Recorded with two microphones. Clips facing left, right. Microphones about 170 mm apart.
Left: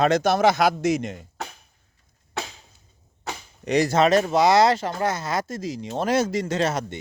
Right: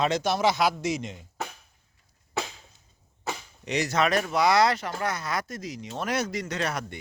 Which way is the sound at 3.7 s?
30° left (ahead or behind).